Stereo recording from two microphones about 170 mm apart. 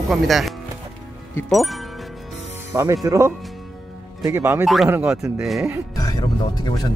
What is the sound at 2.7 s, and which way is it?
Speech, 20° right (ahead or behind).